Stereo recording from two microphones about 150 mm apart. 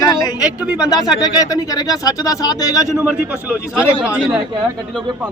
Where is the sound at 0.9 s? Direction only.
25° left (ahead or behind).